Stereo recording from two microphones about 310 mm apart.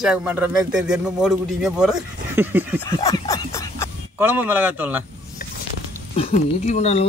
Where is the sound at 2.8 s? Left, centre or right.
Centre.